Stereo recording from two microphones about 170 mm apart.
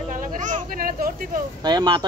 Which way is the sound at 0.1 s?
50° right (ahead or behind).